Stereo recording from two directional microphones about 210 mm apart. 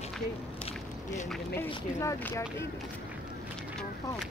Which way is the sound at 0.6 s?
35° left (ahead or behind).